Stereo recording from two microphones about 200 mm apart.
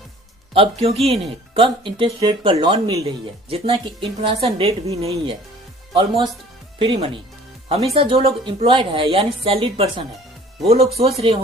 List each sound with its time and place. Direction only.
0.5 s a woman's voice: 30° right (ahead or behind)